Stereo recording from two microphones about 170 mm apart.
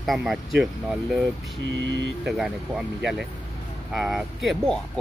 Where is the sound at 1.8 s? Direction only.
90° right.